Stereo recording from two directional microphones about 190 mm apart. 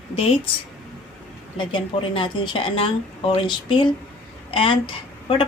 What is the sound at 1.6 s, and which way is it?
Speech, 25° left (ahead or behind).